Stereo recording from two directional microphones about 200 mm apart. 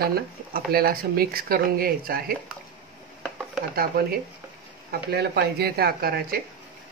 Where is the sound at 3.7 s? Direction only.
50° right (ahead or behind).